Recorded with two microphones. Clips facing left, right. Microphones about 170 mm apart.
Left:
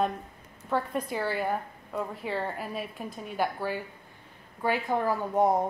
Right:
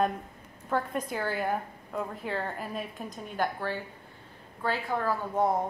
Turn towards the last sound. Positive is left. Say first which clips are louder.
# left 3 dB
turn(degrees=20)  # may be behind; listen again after turning